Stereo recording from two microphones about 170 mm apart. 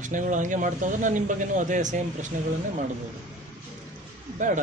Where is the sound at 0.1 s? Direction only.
50° right (ahead or behind).